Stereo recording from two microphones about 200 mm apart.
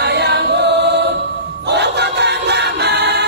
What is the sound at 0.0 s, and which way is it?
Chant, 55° right (ahead or behind).